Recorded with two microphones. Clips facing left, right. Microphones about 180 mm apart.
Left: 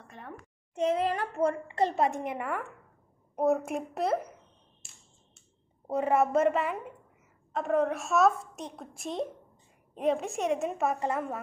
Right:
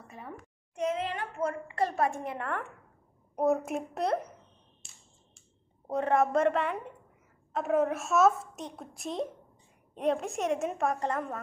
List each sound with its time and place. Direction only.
0.0 s a woman's voice: 5° right (ahead or behind)
0.7 s a woman's voice: 35° left (ahead or behind); by 2.6 s 10° left (ahead or behind)
3.3 s a woman's voice: centre (ahead or behind)
5.9 s a woman's voice: 5° left (ahead or behind)